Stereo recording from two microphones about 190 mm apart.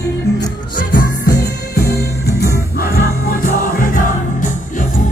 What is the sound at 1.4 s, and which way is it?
Music, 55° left (ahead or behind).